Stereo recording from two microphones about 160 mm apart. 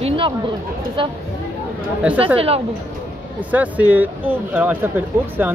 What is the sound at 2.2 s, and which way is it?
Speech, 35° right (ahead or behind).